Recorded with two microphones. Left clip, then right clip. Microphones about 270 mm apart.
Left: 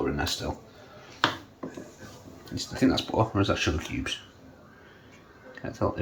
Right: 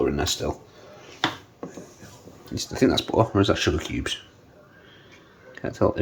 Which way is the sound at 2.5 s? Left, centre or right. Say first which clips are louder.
Right 4 dB; right.